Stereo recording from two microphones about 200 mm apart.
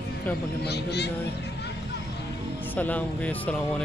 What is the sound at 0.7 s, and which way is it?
Speech, 55° left (ahead or behind).